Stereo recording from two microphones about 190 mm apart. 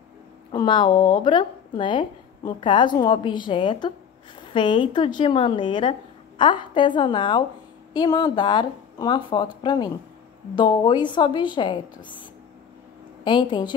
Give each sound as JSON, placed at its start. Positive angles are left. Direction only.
{"t": 0.5, "sound": "speech", "side_deg": 25}
{"t": 13.2, "sound": "speech", "side_deg": 25}